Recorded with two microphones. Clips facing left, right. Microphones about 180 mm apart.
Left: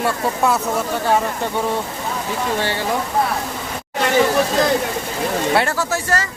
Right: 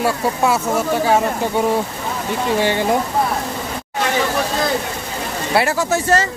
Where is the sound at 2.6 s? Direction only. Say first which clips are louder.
Right 5 dB; 15° right (ahead or behind).